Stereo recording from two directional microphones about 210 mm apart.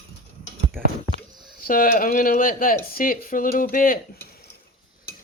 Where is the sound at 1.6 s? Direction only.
40° left (ahead or behind).